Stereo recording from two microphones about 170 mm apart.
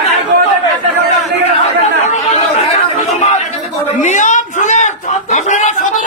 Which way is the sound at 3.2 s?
40° left (ahead or behind).